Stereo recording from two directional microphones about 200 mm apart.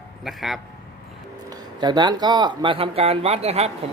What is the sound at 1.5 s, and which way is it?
Speech, 20° right (ahead or behind).